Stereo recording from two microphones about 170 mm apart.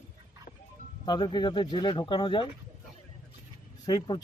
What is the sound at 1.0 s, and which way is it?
Speech, 25° left (ahead or behind).